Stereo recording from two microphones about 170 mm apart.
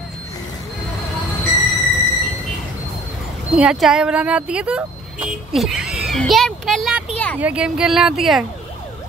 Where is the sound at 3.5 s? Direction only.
5° right (ahead or behind).